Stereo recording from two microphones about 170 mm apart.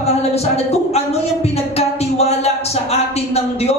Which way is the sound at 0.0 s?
40° left (ahead or behind).